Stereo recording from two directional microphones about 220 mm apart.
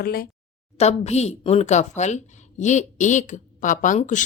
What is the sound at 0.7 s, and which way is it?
A woman's voice, 30° left (ahead or behind).